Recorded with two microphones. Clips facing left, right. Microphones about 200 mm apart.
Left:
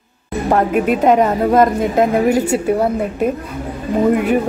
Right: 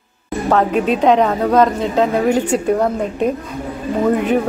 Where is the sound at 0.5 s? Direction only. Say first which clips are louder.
Even; 10° left (ahead or behind).